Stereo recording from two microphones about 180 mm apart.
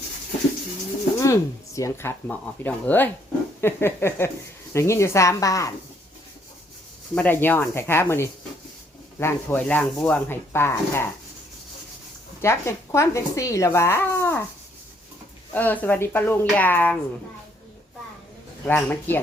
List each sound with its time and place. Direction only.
1.2 s speech: 15° left (ahead or behind)
7.2 s speech: 10° left (ahead or behind)
12.4 s speech: 15° left (ahead or behind)
15.5 s speech: 10° left (ahead or behind)
18.6 s speech: 10° left (ahead or behind)